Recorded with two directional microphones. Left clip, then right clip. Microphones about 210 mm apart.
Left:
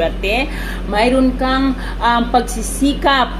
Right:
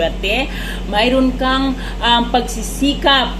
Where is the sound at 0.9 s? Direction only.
20° left (ahead or behind).